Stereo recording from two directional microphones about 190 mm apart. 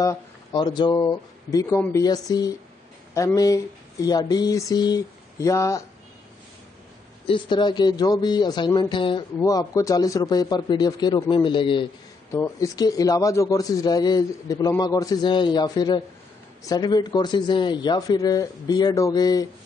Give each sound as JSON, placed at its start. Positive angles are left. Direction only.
{"t": 0.0, "sound": "speech", "side_deg": 20}
{"t": 7.2, "sound": "speech", "side_deg": 25}
{"t": 12.3, "sound": "speech", "side_deg": 15}